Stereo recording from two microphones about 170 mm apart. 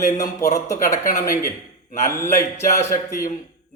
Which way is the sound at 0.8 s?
50° left (ahead or behind).